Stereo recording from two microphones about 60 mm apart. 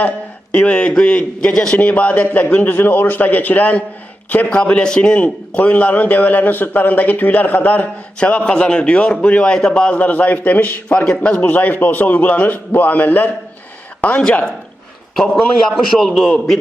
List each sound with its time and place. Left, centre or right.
0.5 s a man's voice: centre
14.2 s a man's voice: centre
15.6 s a man's voice: centre